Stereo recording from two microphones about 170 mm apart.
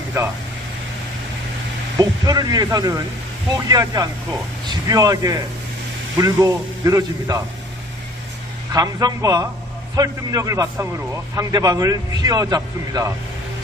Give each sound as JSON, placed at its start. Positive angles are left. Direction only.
{"t": 2.0, "sound": "a man's voice", "side_deg": -25}
{"t": 8.7, "sound": "a man's voice", "side_deg": -25}